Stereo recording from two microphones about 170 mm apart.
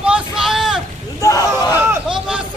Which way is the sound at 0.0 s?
5° right (ahead or behind).